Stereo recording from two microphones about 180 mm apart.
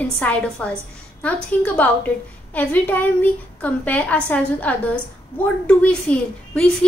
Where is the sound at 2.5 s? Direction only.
10° left (ahead or behind).